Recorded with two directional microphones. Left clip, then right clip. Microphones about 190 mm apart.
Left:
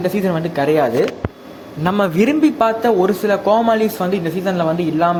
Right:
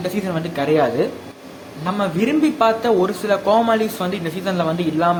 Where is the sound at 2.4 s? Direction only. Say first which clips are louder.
Right 1 dB; 20° left (ahead or behind).